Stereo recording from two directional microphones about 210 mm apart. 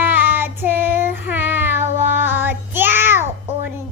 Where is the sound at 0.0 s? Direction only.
10° right (ahead or behind).